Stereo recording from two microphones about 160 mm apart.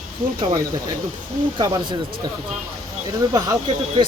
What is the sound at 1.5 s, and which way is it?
Speech, 30° right (ahead or behind).